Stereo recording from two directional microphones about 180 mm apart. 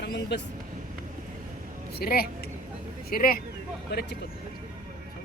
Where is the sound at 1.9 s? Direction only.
55° left (ahead or behind).